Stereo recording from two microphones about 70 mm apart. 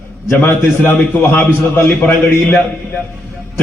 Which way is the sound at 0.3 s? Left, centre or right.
Left.